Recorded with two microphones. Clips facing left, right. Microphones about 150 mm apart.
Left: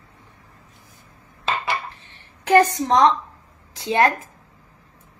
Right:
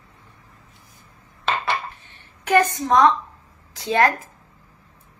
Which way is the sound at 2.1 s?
30° left (ahead or behind).